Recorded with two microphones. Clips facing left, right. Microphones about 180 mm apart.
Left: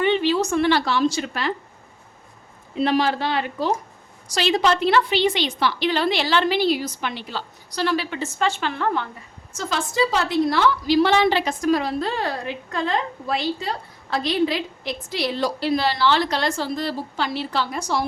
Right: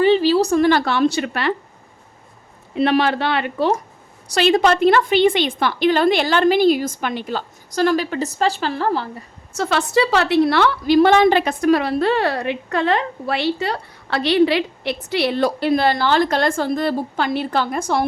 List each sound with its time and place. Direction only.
0.0 s a woman's voice: 35° right (ahead or behind); by 1.5 s 65° right (ahead or behind)
2.7 s a woman's voice: 65° right (ahead or behind)
4.3 s a woman's voice: 55° right (ahead or behind); by 9.0 s 35° right (ahead or behind)
9.5 s a woman's voice: 65° right (ahead or behind)